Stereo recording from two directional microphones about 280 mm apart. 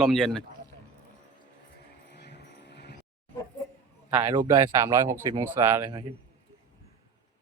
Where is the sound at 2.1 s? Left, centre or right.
Left.